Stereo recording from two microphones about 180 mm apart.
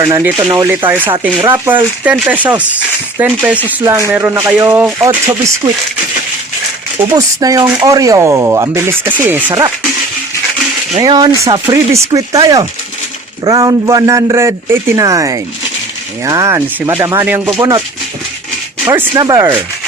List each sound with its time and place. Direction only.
0.1 s a man's voice: 10° right (ahead or behind)
7.1 s speech: 20° right (ahead or behind)
9.5 s a man's voice: 20° right (ahead or behind)
11.0 s a man's voice: 20° right (ahead or behind)
18.9 s a man's voice: 20° right (ahead or behind)